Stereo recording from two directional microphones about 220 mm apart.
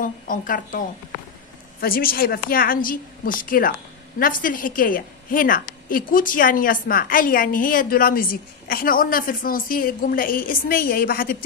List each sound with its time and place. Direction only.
0.0 s a woman's voice: 35° left (ahead or behind)